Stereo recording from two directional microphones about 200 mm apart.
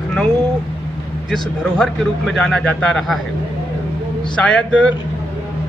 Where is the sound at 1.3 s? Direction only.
5° left (ahead or behind).